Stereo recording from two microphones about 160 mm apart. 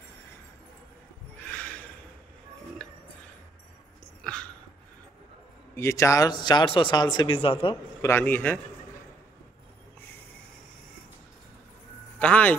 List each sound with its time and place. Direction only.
4.2 s dog: 5° left (ahead or behind)
5.8 s speech: 20° left (ahead or behind); by 7.7 s 35° left (ahead or behind)
8.0 s a man's voice: 15° left (ahead or behind)
12.2 s a man's voice: 10° left (ahead or behind)